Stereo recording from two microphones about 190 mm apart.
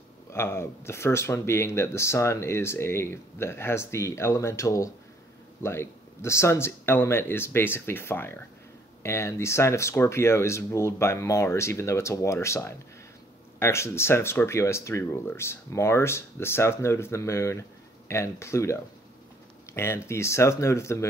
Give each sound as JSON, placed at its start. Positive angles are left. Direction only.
{"t": 0.3, "sound": "speech", "side_deg": 15}